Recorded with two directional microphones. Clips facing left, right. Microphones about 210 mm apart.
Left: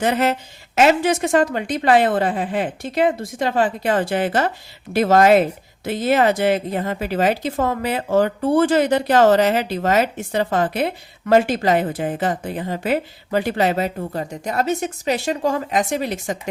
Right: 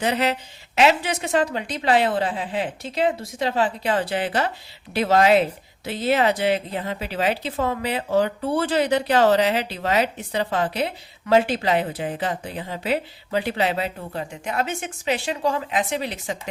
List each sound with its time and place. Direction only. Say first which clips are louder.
0.0 s speech: left 4 dB; 50° left (ahead or behind)